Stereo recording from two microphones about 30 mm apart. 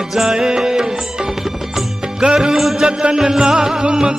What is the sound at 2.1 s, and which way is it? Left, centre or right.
Music, right.